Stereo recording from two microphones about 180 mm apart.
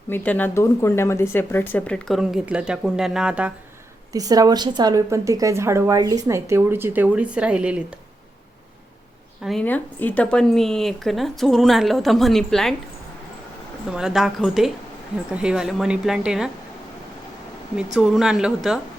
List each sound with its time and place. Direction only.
0.1 s speech: 10° left (ahead or behind)
4.1 s a woman's voice: 20° right (ahead or behind)
9.4 s speech: centre (ahead or behind)
13.9 s speech: 5° right (ahead or behind)
17.9 s speech: 5° right (ahead or behind)